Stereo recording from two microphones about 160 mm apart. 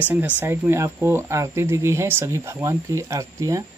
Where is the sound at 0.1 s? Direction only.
10° right (ahead or behind).